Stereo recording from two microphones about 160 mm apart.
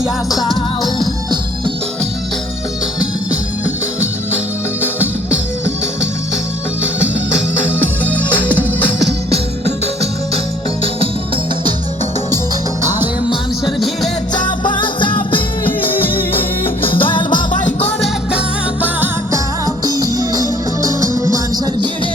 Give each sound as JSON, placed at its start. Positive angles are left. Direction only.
{"t": 9.3, "sound": "music", "side_deg": -40}
{"t": 13.7, "sound": "music", "side_deg": 0}
{"t": 14.3, "sound": "music", "side_deg": 30}
{"t": 17.5, "sound": "music", "side_deg": 50}
{"t": 18.0, "sound": "music", "side_deg": -5}
{"t": 19.6, "sound": "music", "side_deg": -20}